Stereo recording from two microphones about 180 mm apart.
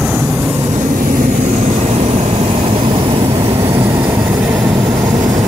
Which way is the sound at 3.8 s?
15° right (ahead or behind).